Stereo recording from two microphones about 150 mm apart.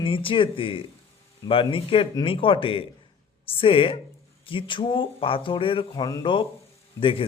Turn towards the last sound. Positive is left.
turn(degrees=35)  # may be behind; listen again after turning